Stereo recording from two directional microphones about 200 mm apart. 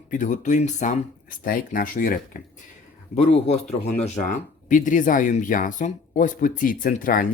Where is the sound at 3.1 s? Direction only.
35° left (ahead or behind).